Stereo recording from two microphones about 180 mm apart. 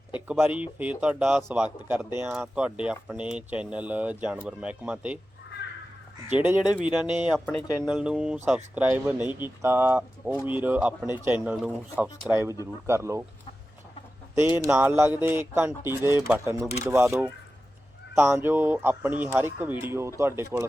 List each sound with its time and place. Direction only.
0.3 s speech: 5° right (ahead or behind)
6.3 s speech: 10° right (ahead or behind)
14.4 s speech: 10° right (ahead or behind)
18.1 s speech: 5° right (ahead or behind)